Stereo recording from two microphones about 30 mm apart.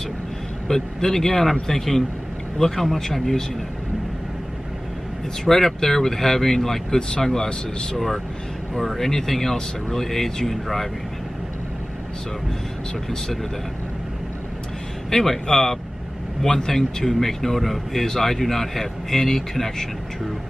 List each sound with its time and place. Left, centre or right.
0.7 s speech: centre
5.4 s speech: centre
8.7 s speech: centre
15.0 s speech: centre